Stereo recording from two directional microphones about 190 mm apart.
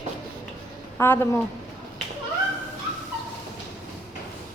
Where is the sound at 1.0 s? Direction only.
10° left (ahead or behind).